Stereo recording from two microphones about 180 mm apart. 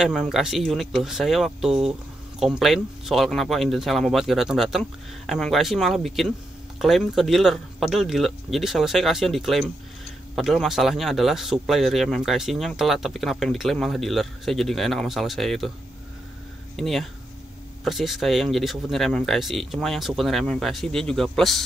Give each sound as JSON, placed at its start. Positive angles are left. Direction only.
{"t": 0.0, "sound": "speech", "side_deg": 0}
{"t": 16.7, "sound": "speech", "side_deg": 0}